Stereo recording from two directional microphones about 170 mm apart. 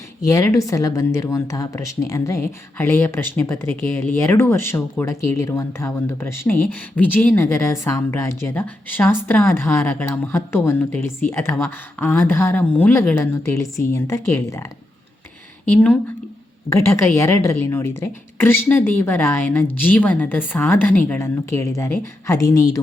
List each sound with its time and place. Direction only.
0.3 s a woman's voice: 20° left (ahead or behind)
17.2 s a woman's voice: 15° left (ahead or behind)